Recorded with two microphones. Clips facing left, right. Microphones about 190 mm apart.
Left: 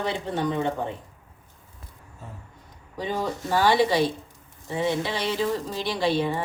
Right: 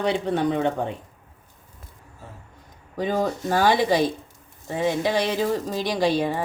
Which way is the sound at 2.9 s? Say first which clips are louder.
Right 4 dB; 45° right (ahead or behind).